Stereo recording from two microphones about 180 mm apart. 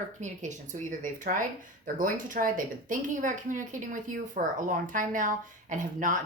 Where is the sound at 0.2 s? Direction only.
45° right (ahead or behind).